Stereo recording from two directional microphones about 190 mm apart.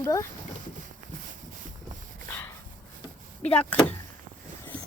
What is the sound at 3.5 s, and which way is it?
Speech, 10° left (ahead or behind).